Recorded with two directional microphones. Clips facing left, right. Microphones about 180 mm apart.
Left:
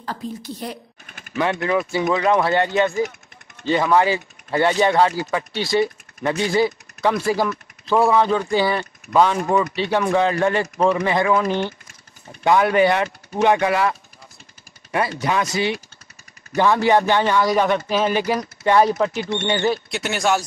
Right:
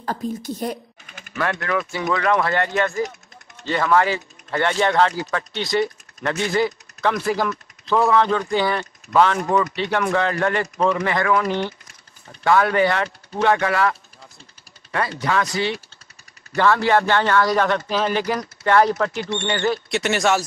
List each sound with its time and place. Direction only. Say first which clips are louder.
0.0 s a woman's voice: right 3 dB; 45° right (ahead or behind)
1.4 s speech: left 3 dB; 20° left (ahead or behind)
19.9 s speech: right 1 dB; centre (ahead or behind)